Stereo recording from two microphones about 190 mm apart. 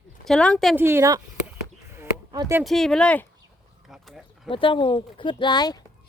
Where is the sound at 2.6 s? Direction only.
Centre (ahead or behind).